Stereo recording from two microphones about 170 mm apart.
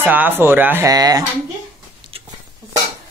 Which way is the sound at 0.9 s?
20° right (ahead or behind).